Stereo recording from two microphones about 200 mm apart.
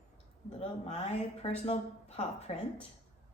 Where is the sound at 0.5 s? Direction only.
30° left (ahead or behind).